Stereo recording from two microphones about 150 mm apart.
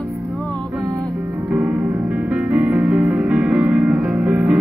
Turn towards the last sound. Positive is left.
turn(degrees=-5)  # may be behind; listen again after turning